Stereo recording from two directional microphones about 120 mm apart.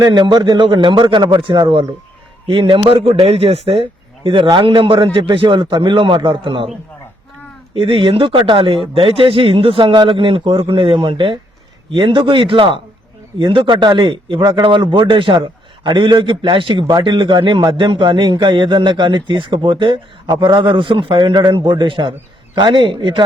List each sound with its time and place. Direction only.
0.0 s a man's voice: 40° right (ahead or behind)
7.7 s a man's voice: 45° right (ahead or behind)